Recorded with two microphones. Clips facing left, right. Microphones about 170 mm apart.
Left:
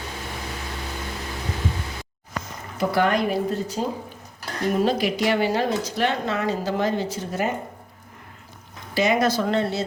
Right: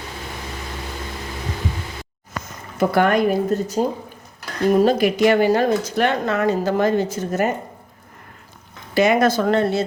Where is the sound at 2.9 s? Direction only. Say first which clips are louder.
Right 4 dB; 55° right (ahead or behind).